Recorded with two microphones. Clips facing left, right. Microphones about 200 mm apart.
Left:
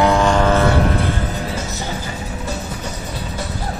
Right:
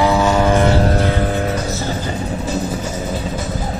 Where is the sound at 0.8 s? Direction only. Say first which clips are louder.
Right 3 dB; 45° right (ahead or behind).